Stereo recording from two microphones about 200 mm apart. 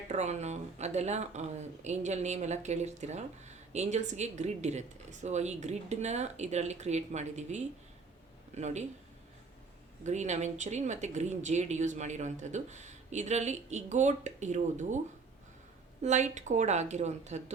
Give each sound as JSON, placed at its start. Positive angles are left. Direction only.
{"t": 0.1, "sound": "speech", "side_deg": -35}
{"t": 10.0, "sound": "speech", "side_deg": -35}
{"t": 16.0, "sound": "speech", "side_deg": -35}